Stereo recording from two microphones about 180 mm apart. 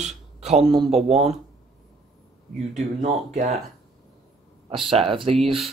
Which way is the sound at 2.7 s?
40° right (ahead or behind).